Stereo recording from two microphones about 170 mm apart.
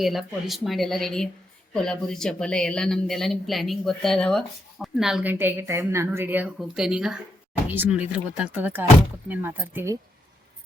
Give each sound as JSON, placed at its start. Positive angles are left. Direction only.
{"t": 0.0, "sound": "speech", "side_deg": 0}